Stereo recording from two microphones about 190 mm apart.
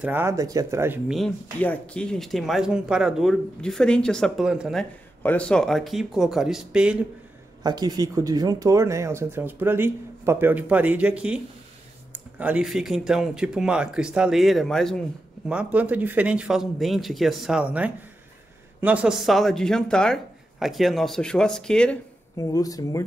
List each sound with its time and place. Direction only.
0.0 s speech: 10° right (ahead or behind)
7.6 s speech: 20° right (ahead or behind); by 21.9 s 5° left (ahead or behind)
22.4 s speech: 20° left (ahead or behind)